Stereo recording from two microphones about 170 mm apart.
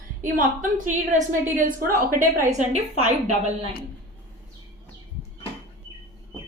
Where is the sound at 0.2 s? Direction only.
50° right (ahead or behind).